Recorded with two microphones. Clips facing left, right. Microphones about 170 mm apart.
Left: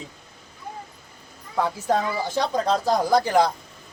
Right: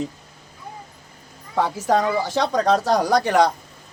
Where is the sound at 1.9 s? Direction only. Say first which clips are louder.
Right 6 dB; 80° right.